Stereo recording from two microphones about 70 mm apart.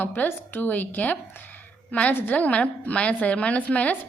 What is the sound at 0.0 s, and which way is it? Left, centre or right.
A woman's voice, left.